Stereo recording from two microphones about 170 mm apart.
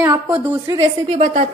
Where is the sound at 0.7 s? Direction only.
30° right (ahead or behind).